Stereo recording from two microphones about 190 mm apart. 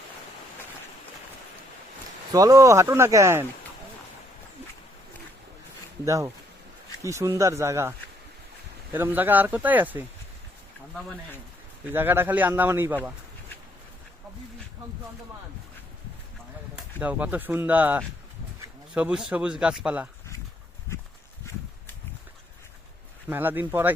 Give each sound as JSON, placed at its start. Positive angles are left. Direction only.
{"t": 2.3, "sound": "speech", "side_deg": -20}
{"t": 6.1, "sound": "speech", "side_deg": -15}
{"t": 11.9, "sound": "speech", "side_deg": -10}
{"t": 17.0, "sound": "speech", "side_deg": -10}
{"t": 23.3, "sound": "speech", "side_deg": -10}